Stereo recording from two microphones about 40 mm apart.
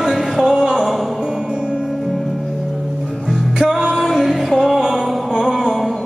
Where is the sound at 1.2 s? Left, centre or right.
Right.